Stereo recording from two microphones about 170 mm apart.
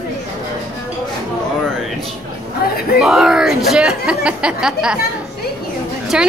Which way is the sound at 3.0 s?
5° right (ahead or behind).